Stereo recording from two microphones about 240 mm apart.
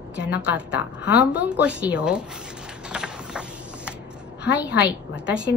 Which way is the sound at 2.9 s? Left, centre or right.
Centre.